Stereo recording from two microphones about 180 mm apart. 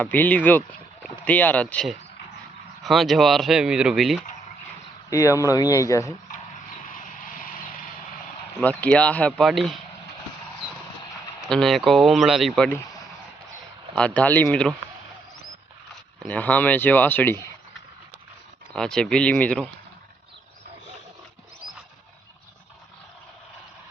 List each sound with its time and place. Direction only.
0.0 s speech: 10° left (ahead or behind)
5.1 s speech: 15° left (ahead or behind)
6.9 s vehicle: 50° left (ahead or behind)
8.6 s speech: 5° left (ahead or behind)
11.4 s speech: 5° left (ahead or behind)
13.9 s speech: 5° left (ahead or behind)
16.2 s speech: 10° left (ahead or behind)
18.7 s speech: 5° left (ahead or behind)